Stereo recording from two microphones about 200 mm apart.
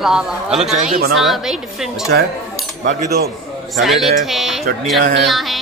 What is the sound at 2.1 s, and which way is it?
Speech, 60° right (ahead or behind).